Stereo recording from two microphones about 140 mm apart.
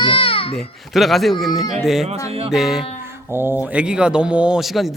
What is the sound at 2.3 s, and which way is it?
Music, 45° right (ahead or behind).